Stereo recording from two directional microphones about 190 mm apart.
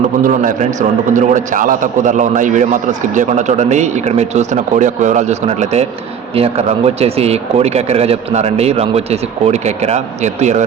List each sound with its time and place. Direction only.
0.2 s a man's voice: 45° right (ahead or behind)